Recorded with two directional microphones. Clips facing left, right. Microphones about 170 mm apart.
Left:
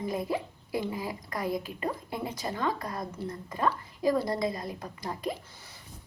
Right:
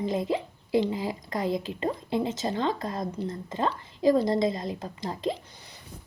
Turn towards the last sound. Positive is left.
turn(degrees=-25)  # may be behind; listen again after turning